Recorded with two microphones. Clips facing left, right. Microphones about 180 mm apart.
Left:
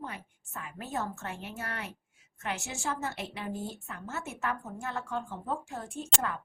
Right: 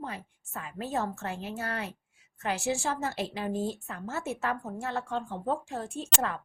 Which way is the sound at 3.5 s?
90° right.